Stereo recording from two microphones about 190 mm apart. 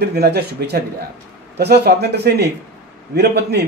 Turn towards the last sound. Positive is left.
turn(degrees=-60)  # may be behind; listen again after turning